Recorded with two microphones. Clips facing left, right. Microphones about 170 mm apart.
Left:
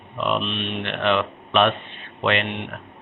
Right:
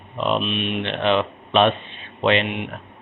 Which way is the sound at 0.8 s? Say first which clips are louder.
Right 1 dB; 20° right (ahead or behind).